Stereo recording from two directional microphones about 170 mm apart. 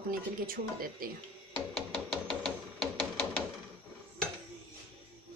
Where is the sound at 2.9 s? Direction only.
5° left (ahead or behind).